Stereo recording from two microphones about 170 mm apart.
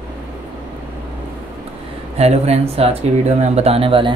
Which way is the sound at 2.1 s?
40° right (ahead or behind).